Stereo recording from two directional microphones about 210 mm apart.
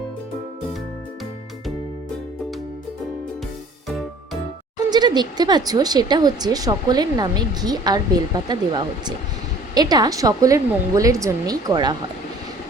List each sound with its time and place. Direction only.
4.9 s a woman's voice: 20° right (ahead or behind)